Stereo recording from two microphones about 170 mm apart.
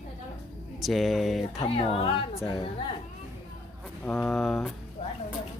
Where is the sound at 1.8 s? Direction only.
35° left (ahead or behind).